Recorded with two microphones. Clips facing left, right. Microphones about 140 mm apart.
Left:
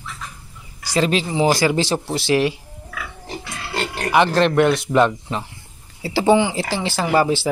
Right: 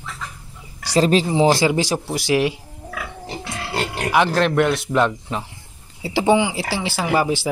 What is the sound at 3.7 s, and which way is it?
Speech, 10° right (ahead or behind).